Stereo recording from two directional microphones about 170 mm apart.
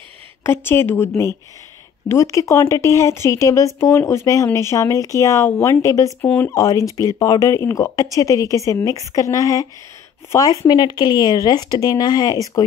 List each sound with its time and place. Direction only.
0.4 s a woman's voice: 15° left (ahead or behind)